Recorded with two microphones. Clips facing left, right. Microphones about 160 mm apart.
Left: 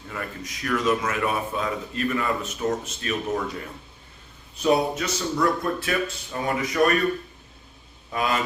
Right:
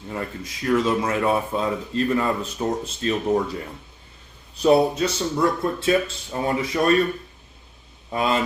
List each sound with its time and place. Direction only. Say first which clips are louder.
0.1 s speech: right 4 dB; 30° right (ahead or behind)
4.6 s speech: right 5 dB; 30° right (ahead or behind)
8.1 s speech: right 3 dB; 30° right (ahead or behind)